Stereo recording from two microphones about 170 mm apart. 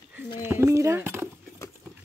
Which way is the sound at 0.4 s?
15° right (ahead or behind).